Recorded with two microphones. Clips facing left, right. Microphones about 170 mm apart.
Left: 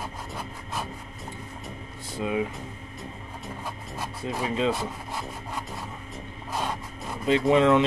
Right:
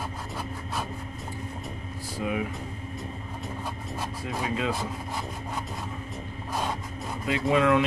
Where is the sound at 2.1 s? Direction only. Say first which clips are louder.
Left 2 dB; 25° left (ahead or behind).